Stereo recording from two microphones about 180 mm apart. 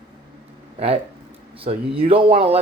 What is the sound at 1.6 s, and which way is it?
Speech, 30° right (ahead or behind).